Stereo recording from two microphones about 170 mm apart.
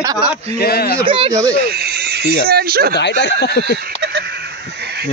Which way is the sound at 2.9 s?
90° left.